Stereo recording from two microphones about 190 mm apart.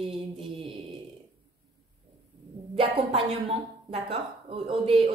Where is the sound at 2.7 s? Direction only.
30° right (ahead or behind).